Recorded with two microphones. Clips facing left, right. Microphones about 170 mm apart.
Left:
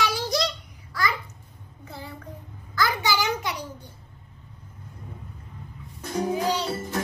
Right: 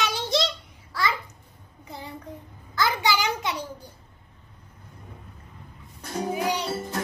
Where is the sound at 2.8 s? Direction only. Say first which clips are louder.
Right 1 dB; 20° right (ahead or behind).